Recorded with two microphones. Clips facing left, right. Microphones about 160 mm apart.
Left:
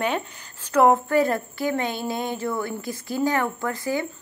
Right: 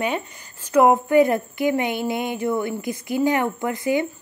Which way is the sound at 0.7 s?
10° right (ahead or behind).